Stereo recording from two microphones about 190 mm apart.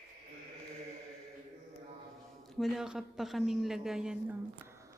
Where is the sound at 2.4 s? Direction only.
Centre (ahead or behind).